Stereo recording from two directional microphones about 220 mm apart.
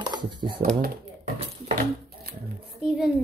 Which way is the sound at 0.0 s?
20° right (ahead or behind).